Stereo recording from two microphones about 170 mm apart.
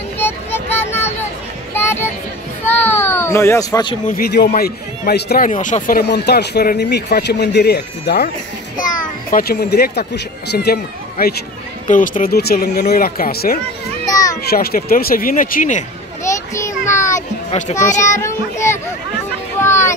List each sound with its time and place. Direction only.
0.2 s vehicle: 15° left (ahead or behind)
1.7 s children playing: 15° left (ahead or behind)
4.1 s speech: 70° left (ahead or behind)
5.5 s a child's voice: 50° left (ahead or behind)
5.9 s speech: 70° left (ahead or behind)
9.3 s speech: 65° left (ahead or behind)
11.9 s speech: 50° left (ahead or behind)
14.0 s a sound: 20° left (ahead or behind)
14.5 s speech: 65° left (ahead or behind)
16.3 s a sound: 15° left (ahead or behind)
17.5 s a child's voice: 45° left (ahead or behind)
18.0 s child singing: 15° left (ahead or behind)
19.6 s a sound: 15° left (ahead or behind)